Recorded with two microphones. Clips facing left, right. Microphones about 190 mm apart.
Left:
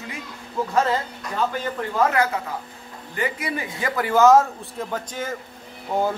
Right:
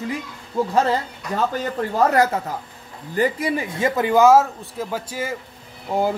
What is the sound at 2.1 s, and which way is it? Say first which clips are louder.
Speech: right 4 dB; 40° right (ahead or behind).